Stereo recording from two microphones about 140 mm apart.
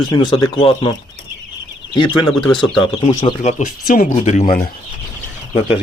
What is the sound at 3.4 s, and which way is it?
Speech, 55° left (ahead or behind).